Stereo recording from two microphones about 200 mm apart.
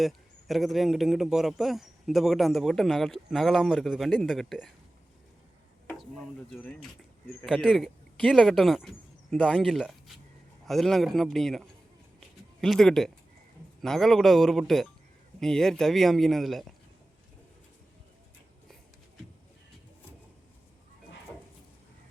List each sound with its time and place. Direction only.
0.0 s a man's voice: centre (ahead or behind)
6.5 s a man's voice: 5° left (ahead or behind)
12.6 s a man's voice: centre (ahead or behind)